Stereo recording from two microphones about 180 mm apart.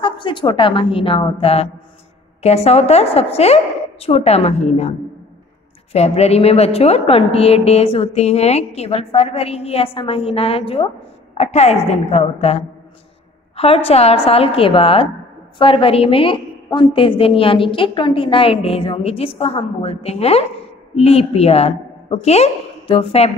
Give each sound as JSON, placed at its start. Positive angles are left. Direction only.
{"t": 0.0, "sound": "a woman's voice", "side_deg": 25}
{"t": 5.9, "sound": "a woman's voice", "side_deg": 35}